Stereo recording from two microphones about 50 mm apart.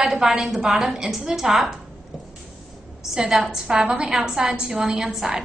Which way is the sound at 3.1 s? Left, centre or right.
Centre.